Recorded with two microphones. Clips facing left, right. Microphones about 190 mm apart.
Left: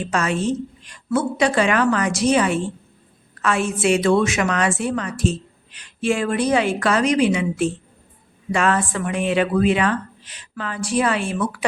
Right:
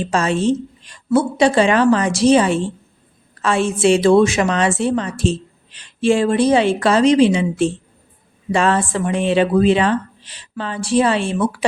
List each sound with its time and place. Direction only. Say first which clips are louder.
0.0 s a woman's voice: right 4 dB; 30° right (ahead or behind)